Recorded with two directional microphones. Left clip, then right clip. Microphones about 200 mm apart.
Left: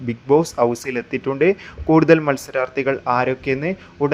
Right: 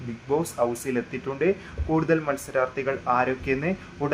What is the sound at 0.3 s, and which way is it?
Speech, 30° left (ahead or behind).